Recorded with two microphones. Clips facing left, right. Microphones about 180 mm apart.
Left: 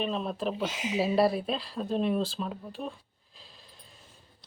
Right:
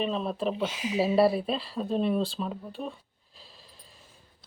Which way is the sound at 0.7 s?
30° right (ahead or behind).